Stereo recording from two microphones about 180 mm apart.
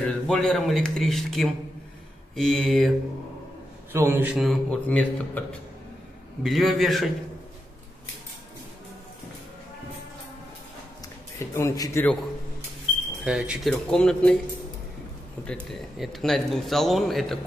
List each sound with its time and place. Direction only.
0.0 s speech: 5° left (ahead or behind)
3.9 s speech: 10° right (ahead or behind)
11.3 s a man's voice: 15° left (ahead or behind)
13.2 s speech: 5° right (ahead or behind)
15.4 s speech: 5° left (ahead or behind)